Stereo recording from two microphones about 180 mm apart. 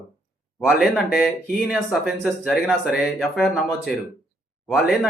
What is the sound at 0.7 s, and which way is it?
Speech, centre (ahead or behind).